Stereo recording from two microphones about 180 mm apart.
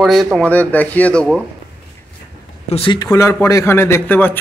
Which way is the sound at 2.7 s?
25° left (ahead or behind).